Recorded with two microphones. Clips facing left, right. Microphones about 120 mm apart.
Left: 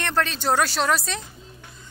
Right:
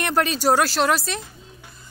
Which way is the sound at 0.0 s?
10° right (ahead or behind).